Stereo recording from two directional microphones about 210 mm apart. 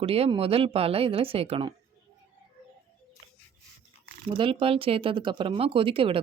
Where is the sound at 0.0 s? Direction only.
30° right (ahead or behind).